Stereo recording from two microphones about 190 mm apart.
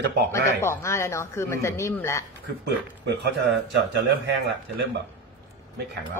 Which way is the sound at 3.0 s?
65° right (ahead or behind).